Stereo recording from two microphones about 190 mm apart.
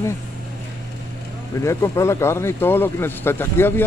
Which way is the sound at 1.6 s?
15° left (ahead or behind).